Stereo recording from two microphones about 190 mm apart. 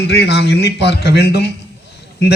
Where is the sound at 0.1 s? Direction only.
60° left (ahead or behind).